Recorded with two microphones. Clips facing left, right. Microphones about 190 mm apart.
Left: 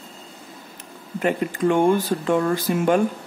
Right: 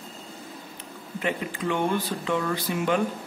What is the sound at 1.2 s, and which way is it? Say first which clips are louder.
A man's voice: left 8 dB; 45° left (ahead or behind).